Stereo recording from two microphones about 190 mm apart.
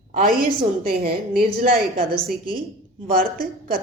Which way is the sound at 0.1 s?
45° right (ahead or behind).